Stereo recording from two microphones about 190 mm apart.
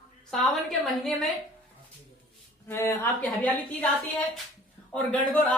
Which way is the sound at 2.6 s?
10° left (ahead or behind).